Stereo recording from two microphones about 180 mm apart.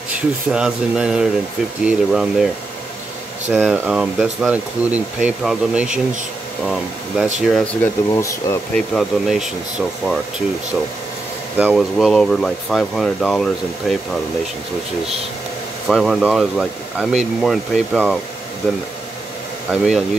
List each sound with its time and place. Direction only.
0.5 s speech: 5° right (ahead or behind)
7.8 s speech: 15° left (ahead or behind)
8.7 s speech: centre (ahead or behind)
11.5 s speech: 5° right (ahead or behind)
15.9 s speech: centre (ahead or behind)